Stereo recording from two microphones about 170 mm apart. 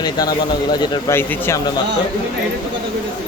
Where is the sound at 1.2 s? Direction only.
15° left (ahead or behind).